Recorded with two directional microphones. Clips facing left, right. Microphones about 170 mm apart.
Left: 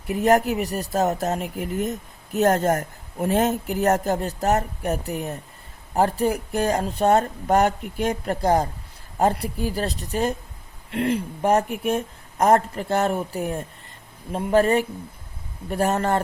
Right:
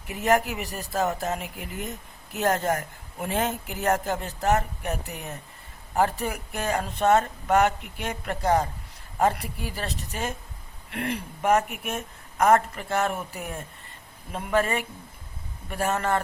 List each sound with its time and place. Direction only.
0.1 s speech: 40° left (ahead or behind)